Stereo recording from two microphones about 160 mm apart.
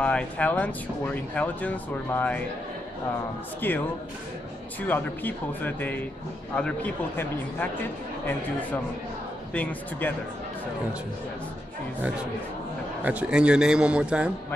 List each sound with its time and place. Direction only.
0.0 s speech: 5° left (ahead or behind)
3.6 s speech: 10° left (ahead or behind)
4.8 s speech: 10° left (ahead or behind)
9.5 s speech: 10° left (ahead or behind)
13.0 s a man's voice: 10° right (ahead or behind)